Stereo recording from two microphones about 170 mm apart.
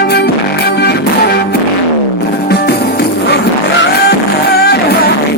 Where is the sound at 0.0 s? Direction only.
70° left (ahead or behind).